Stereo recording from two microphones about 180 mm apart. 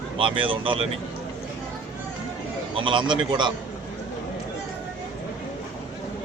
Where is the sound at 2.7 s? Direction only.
30° right (ahead or behind).